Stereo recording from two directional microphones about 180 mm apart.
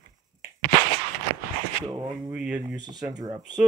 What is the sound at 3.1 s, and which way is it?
Speech, 20° right (ahead or behind).